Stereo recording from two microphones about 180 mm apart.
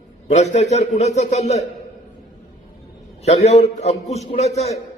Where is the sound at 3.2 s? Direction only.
35° left (ahead or behind).